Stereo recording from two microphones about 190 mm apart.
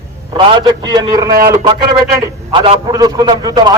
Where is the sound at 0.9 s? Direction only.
20° right (ahead or behind).